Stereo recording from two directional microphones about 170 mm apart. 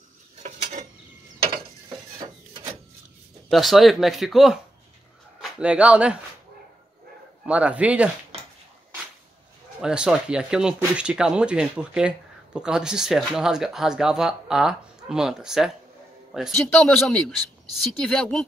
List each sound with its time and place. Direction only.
0.4 s a sound: 45° right (ahead or behind)
3.4 s speech: centre (ahead or behind)
7.4 s speech: 5° right (ahead or behind)
9.8 s speech: 5° right (ahead or behind)